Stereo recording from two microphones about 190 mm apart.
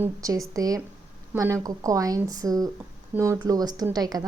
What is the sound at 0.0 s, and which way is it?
Speech, 15° right (ahead or behind).